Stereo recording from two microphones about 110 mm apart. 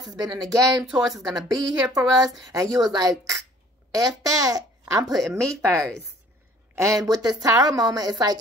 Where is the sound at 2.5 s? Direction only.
30° right (ahead or behind).